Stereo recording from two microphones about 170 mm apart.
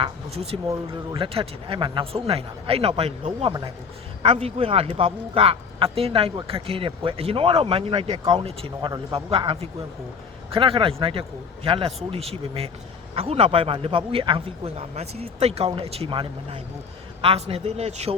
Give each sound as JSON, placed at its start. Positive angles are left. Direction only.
{"t": 0.0, "sound": "speech", "side_deg": -35}